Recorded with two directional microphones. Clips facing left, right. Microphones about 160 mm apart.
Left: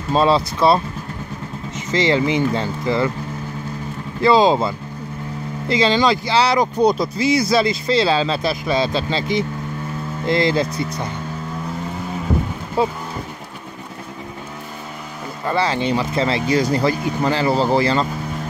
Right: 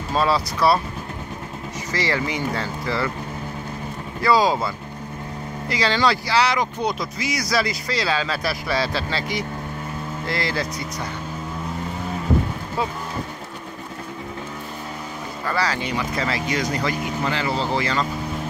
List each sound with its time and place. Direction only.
0.1 s speech: 25° left (ahead or behind)
1.9 s speech: 20° left (ahead or behind)
4.2 s speech: 25° left (ahead or behind)
12.8 s speech: 30° left (ahead or behind)
15.4 s speech: 25° left (ahead or behind)